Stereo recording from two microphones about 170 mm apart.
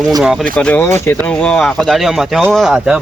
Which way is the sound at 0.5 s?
10° left (ahead or behind).